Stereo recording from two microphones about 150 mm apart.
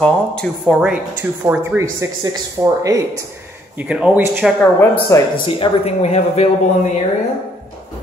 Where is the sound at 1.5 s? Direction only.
15° right (ahead or behind).